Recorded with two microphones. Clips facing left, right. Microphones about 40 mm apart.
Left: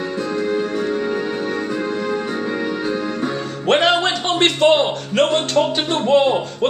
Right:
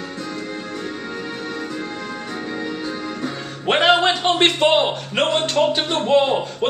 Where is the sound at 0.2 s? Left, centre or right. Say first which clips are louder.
Left 10 dB; left.